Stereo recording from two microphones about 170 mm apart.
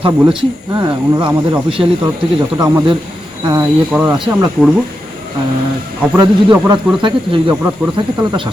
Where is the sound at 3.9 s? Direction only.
5° right (ahead or behind).